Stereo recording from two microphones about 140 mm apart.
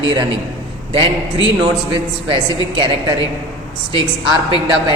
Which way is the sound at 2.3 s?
35° right (ahead or behind).